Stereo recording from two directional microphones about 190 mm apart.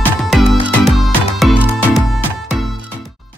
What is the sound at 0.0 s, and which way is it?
Music, centre (ahead or behind).